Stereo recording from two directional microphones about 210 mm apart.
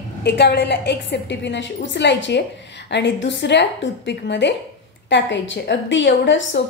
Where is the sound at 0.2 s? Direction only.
55° left (ahead or behind).